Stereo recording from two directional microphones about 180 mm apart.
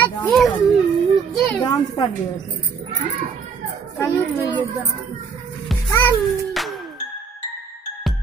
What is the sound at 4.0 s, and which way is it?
Speech, 10° left (ahead or behind).